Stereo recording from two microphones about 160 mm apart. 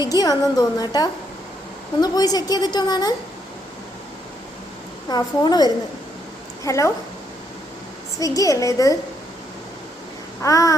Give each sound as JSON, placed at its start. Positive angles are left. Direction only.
{"t": 0.1, "sound": "a woman's voice", "side_deg": 25}
{"t": 5.0, "sound": "a woman's voice", "side_deg": 25}
{"t": 8.2, "sound": "a woman's voice", "side_deg": 20}
{"t": 10.4, "sound": "a woman's voice", "side_deg": 20}